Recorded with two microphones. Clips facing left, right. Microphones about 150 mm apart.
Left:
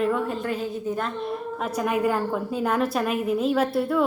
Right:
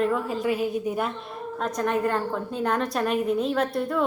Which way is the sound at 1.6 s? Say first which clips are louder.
Even; 5° left (ahead or behind).